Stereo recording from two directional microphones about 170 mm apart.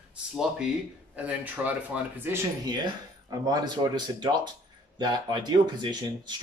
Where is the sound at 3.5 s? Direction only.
25° right (ahead or behind).